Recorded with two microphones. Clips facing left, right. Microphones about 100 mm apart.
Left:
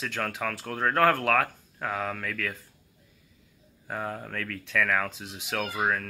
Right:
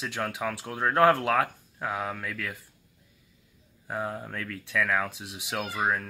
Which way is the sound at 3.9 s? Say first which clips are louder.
Right 1 dB; 10° right (ahead or behind).